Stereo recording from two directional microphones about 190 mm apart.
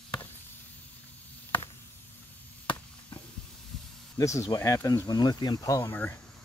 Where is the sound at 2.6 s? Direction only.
25° left (ahead or behind).